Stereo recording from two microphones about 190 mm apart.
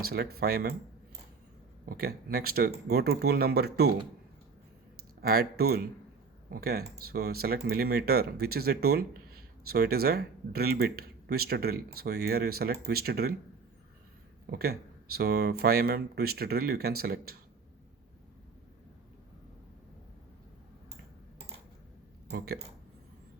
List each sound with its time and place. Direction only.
0.1 s speech: 55° right (ahead or behind)
1.9 s speech: 55° right (ahead or behind)
5.2 s speech: 55° right (ahead or behind)
14.5 s speech: 55° right (ahead or behind)
22.3 s speech: 55° right (ahead or behind)